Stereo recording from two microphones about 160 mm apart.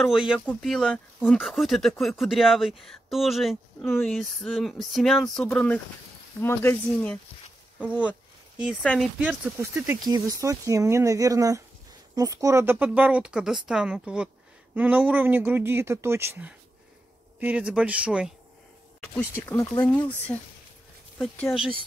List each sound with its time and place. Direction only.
0.0 s speech: 5° right (ahead or behind)
3.8 s speech: 15° left (ahead or behind)
4.1 s speech: centre (ahead or behind)
6.4 s speech: 15° left (ahead or behind)
8.8 s speech: centre (ahead or behind)
19.1 s speech: 10° left (ahead or behind)